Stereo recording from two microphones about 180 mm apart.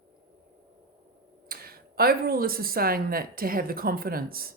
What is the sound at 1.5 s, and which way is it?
Speech, 55° right (ahead or behind).